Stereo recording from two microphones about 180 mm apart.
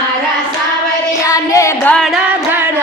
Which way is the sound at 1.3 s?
20° left (ahead or behind).